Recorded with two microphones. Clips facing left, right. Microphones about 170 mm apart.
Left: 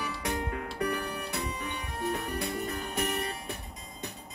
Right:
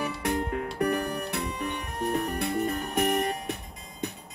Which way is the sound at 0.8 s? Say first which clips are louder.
Right 4 dB; 65° right (ahead or behind).